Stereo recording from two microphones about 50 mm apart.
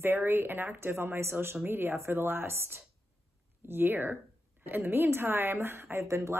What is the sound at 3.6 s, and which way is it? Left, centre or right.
A woman's voice, right.